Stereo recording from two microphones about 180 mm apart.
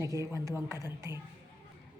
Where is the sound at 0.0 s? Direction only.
15° right (ahead or behind).